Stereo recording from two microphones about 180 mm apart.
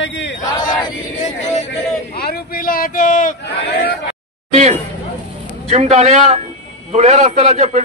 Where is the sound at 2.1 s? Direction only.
60° left (ahead or behind).